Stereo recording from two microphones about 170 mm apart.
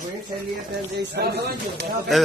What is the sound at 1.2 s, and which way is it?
Speech, 75° right (ahead or behind).